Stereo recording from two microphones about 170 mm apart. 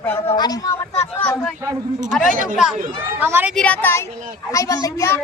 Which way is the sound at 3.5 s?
10° left (ahead or behind).